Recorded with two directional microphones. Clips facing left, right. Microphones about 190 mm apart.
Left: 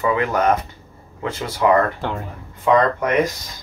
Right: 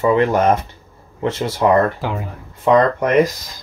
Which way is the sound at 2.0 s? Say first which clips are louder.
Right 2 dB; 5° right (ahead or behind).